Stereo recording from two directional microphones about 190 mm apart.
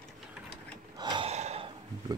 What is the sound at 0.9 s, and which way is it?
Gasp, 25° right (ahead or behind).